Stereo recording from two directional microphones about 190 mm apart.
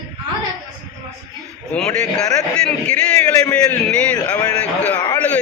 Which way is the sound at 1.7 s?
5° left (ahead or behind).